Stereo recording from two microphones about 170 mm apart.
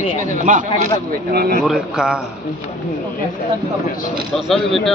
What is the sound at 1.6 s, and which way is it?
Speech, 5° right (ahead or behind).